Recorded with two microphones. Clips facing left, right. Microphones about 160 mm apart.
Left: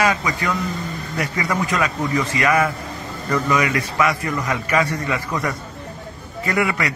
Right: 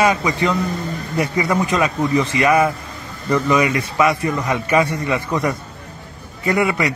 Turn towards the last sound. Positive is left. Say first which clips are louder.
# right 3 dB
turn(degrees=-20)  # may be behind; listen again after turning